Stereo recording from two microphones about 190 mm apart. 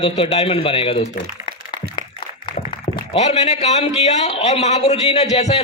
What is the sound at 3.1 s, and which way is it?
A man's voice, 35° left (ahead or behind).